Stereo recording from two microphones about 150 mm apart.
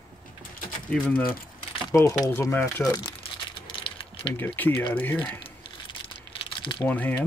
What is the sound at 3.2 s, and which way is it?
Crumpling, 35° left (ahead or behind).